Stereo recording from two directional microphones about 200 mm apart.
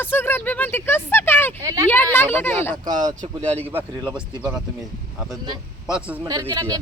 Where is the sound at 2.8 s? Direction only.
20° right (ahead or behind).